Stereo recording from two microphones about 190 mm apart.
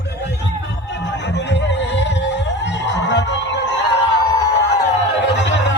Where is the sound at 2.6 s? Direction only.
70° left (ahead or behind).